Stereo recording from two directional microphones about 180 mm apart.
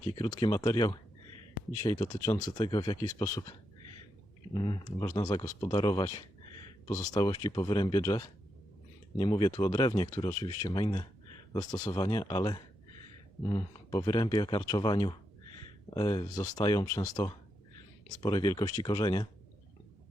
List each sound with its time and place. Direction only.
0.0 s speech: 20° left (ahead or behind)
4.5 s speech: 25° left (ahead or behind)